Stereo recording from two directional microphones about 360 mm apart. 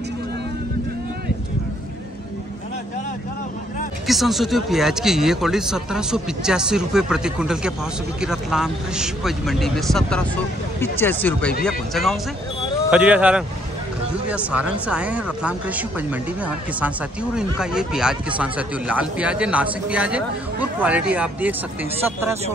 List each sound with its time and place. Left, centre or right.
4.1 s speech: centre